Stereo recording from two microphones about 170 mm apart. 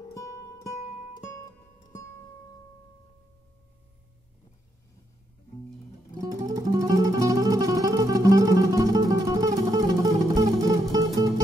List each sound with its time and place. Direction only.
0.1 s music: 20° left (ahead or behind)
6.1 s music: 20° right (ahead or behind)